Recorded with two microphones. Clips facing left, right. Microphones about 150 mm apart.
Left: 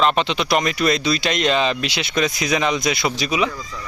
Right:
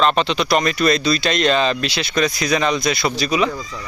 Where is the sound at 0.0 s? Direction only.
10° left (ahead or behind).